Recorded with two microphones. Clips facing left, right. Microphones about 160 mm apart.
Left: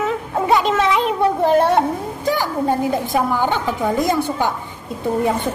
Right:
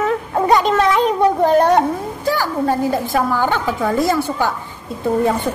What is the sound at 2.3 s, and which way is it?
A woman's voice, 20° left (ahead or behind).